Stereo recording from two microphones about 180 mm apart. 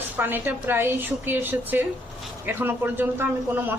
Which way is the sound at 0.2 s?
10° right (ahead or behind).